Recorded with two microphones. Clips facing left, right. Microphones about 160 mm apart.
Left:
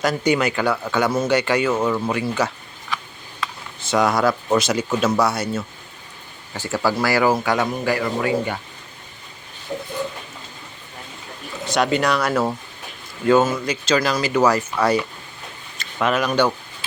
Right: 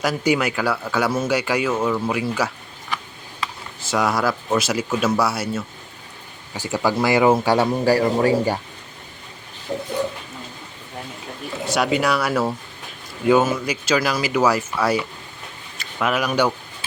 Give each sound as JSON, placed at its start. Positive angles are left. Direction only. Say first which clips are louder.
{"t": 0.0, "sound": "speech", "louder": "left 1 dB", "side_deg": -5}
{"t": 3.8, "sound": "a man's voice", "louder": "left 2 dB", "side_deg": -5}
{"t": 11.6, "sound": "speech", "louder": "left 1 dB", "side_deg": -5}